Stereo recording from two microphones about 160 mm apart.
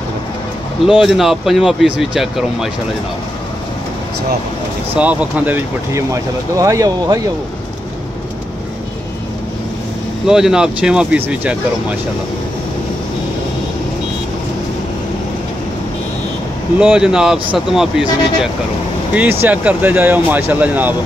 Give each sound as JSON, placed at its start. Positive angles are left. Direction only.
{"t": 0.8, "sound": "speech", "side_deg": 0}
{"t": 4.9, "sound": "speech", "side_deg": -10}
{"t": 6.6, "sound": "speech", "side_deg": -20}
{"t": 10.2, "sound": "speech", "side_deg": -5}
{"t": 16.8, "sound": "speech", "side_deg": -5}